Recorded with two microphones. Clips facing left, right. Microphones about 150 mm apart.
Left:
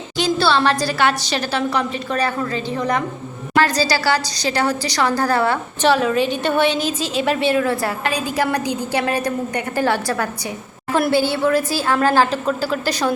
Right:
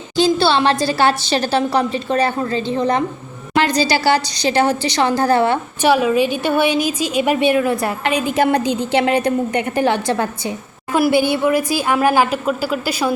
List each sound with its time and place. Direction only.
0.2 s a woman's voice: 25° right (ahead or behind)
5.8 s a woman's voice: 10° right (ahead or behind)
10.9 s a woman's voice: 10° right (ahead or behind)